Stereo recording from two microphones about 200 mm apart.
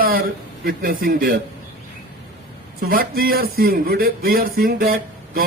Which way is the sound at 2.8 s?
45° right (ahead or behind).